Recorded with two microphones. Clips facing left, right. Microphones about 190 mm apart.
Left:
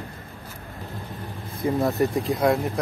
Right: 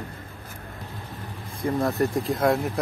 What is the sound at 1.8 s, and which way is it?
Speech, centre (ahead or behind).